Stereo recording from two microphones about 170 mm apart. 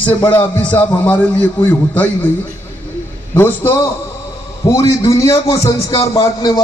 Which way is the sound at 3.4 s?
10° left (ahead or behind).